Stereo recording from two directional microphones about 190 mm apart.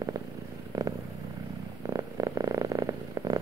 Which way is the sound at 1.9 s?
20° right (ahead or behind).